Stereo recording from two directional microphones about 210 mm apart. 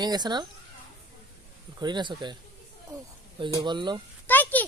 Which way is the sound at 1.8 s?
20° right (ahead or behind).